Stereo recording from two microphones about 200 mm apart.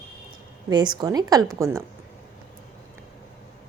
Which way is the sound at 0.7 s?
20° right (ahead or behind).